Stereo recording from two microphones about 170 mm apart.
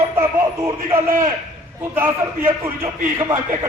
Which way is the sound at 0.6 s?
15° right (ahead or behind).